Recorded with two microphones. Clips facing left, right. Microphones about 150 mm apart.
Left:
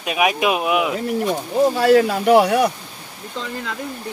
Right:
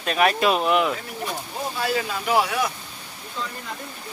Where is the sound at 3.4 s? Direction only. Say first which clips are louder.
Left 4 dB; 75° left (ahead or behind).